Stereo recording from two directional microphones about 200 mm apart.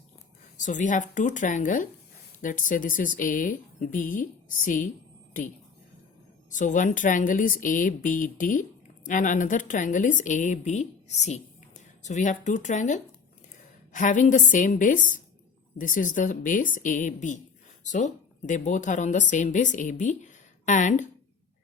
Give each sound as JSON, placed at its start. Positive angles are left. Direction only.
{"t": 0.6, "sound": "a woman's voice", "side_deg": 40}
{"t": 6.5, "sound": "a woman's voice", "side_deg": 40}